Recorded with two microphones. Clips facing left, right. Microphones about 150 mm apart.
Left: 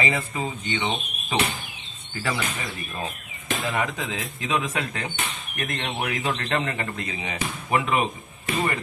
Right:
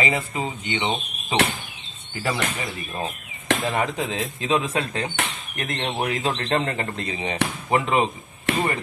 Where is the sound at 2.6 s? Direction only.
20° right (ahead or behind).